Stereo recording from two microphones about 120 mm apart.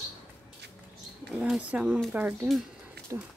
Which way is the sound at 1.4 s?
10° right (ahead or behind).